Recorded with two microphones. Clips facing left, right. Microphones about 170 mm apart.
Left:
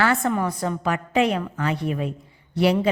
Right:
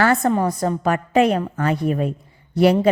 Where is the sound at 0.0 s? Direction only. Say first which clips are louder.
Right 4 dB; 40° right (ahead or behind).